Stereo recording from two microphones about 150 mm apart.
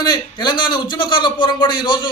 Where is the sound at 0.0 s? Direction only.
30° left (ahead or behind).